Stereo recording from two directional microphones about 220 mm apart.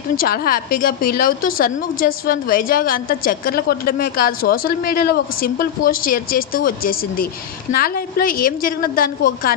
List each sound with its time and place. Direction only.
0.2 s a woman's voice: 40° left (ahead or behind)